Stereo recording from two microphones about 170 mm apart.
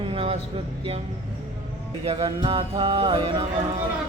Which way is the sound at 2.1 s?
30° right (ahead or behind).